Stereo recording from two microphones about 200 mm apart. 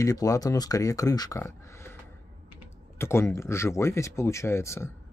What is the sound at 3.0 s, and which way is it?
Speech, 15° left (ahead or behind).